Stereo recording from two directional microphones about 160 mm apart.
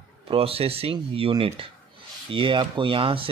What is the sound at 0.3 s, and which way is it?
Speech, 35° right (ahead or behind).